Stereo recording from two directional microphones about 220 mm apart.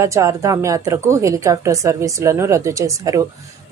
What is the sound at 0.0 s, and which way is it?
A woman's voice, 15° right (ahead or behind).